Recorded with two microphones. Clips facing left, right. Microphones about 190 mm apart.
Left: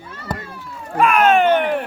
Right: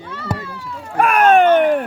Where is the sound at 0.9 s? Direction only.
50° right (ahead or behind).